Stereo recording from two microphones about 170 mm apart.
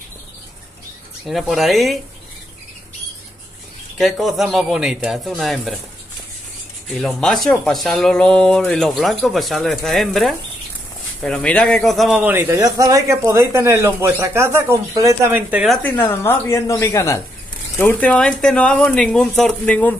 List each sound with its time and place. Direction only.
1.2 s speech: centre (ahead or behind)
4.0 s speech: centre (ahead or behind)
6.9 s a man's voice: 5° left (ahead or behind)
15.8 s speech: 10° left (ahead or behind)